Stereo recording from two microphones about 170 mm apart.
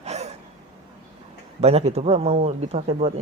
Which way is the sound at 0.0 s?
40° right (ahead or behind).